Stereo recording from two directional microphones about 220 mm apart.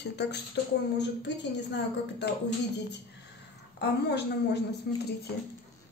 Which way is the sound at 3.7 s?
50° left (ahead or behind).